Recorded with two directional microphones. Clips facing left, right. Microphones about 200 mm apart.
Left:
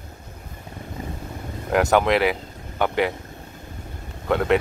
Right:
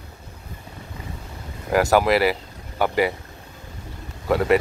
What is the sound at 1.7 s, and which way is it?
Speech, centre (ahead or behind).